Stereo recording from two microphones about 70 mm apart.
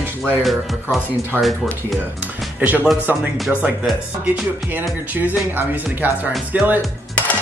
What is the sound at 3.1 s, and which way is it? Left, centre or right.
Speech, right.